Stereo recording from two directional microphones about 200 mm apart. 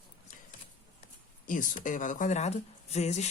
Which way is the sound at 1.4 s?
40° left (ahead or behind).